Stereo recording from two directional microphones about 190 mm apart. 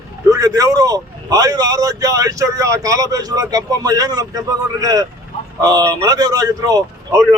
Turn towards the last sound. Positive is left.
turn(degrees=-15)  # may be behind; listen again after turning